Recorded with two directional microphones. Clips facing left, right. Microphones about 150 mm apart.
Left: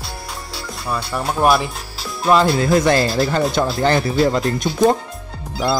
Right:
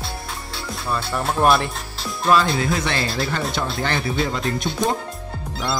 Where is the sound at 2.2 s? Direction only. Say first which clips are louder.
Left 3 dB; 25° left (ahead or behind).